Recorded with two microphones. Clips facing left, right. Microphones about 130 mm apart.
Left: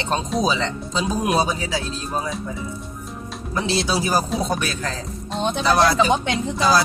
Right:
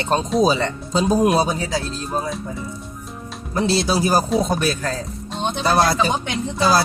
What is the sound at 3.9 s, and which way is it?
Music, 45° right (ahead or behind).